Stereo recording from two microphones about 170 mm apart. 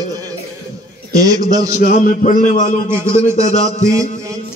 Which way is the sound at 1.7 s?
50° left (ahead or behind).